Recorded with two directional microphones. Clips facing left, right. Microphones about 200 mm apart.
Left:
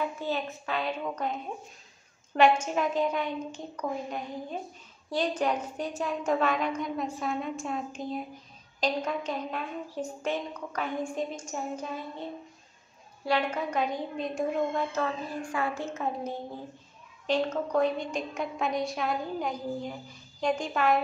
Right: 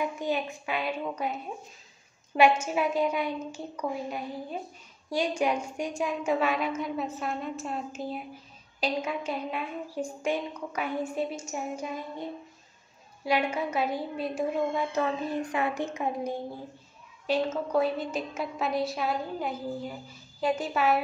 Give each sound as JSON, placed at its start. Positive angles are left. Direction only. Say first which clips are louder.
{"t": 0.0, "sound": "a woman's voice", "louder": "right 2 dB", "side_deg": -15}